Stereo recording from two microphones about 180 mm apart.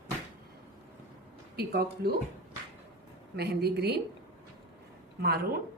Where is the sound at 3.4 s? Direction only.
65° right (ahead or behind).